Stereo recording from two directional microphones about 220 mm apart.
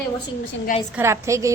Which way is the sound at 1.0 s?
15° right (ahead or behind).